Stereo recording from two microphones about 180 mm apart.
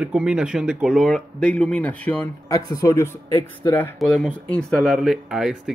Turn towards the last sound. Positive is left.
turn(degrees=0)  # may be behind; listen again after turning